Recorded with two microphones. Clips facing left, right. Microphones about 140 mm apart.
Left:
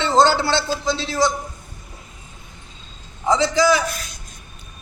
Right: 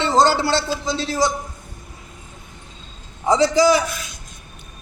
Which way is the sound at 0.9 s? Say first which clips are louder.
Even; 40° right (ahead or behind).